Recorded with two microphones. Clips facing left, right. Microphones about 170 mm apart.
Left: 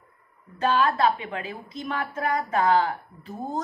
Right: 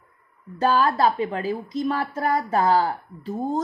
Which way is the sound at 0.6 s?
40° right (ahead or behind).